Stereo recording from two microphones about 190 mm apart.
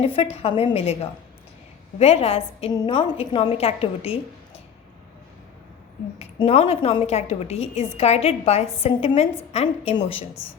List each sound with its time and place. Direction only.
0.0 s a woman's voice: 30° left (ahead or behind)
2.0 s a woman's voice: 35° left (ahead or behind)
6.1 s a woman's voice: 35° left (ahead or behind)